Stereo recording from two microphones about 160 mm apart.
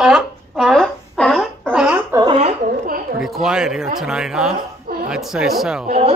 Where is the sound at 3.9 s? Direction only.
5° right (ahead or behind).